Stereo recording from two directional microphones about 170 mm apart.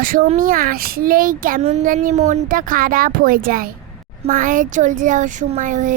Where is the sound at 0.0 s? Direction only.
55° right (ahead or behind).